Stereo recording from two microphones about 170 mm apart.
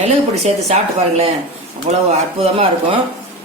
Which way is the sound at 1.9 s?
40° right (ahead or behind).